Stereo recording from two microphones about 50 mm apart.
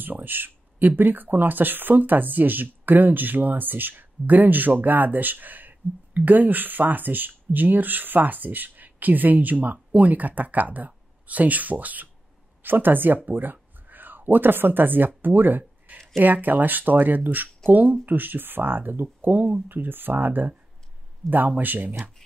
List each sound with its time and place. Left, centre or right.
0.0 s speech: right